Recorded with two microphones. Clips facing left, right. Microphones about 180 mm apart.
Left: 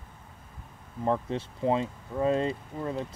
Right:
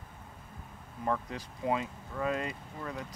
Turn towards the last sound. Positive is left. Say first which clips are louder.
# left 7 dB
turn(degrees=25)  # may be behind; listen again after turning